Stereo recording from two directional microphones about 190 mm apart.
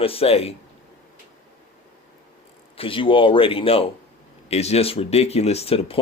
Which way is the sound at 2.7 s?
30° left (ahead or behind).